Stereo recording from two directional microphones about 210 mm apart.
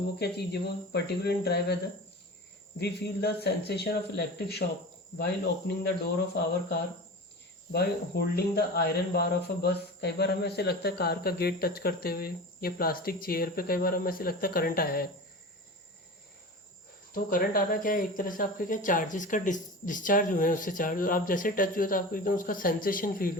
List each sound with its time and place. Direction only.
0.2 s speech: 50° left (ahead or behind)
2.7 s speech: 50° left (ahead or behind)
17.2 s speech: 40° left (ahead or behind)